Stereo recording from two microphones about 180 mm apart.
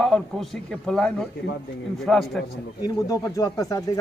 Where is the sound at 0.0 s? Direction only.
Centre (ahead or behind).